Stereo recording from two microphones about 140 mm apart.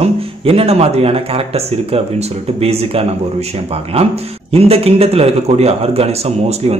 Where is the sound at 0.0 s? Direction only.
45° right (ahead or behind).